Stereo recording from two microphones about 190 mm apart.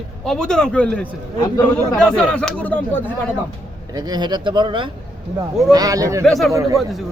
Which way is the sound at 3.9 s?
20° right (ahead or behind).